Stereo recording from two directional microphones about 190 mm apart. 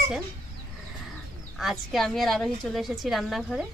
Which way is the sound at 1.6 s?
Centre (ahead or behind).